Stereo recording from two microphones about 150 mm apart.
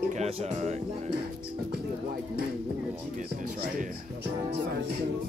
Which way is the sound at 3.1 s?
60° right (ahead or behind).